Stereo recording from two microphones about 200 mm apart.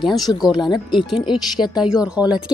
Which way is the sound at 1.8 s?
5° right (ahead or behind).